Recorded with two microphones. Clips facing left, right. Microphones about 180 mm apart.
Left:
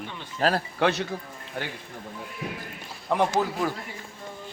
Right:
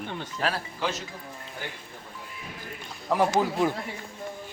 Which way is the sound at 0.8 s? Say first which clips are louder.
Left 9 dB; 65° left (ahead or behind).